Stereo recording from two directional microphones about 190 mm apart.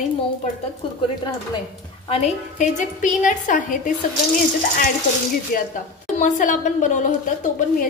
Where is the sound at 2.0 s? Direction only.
35° left (ahead or behind).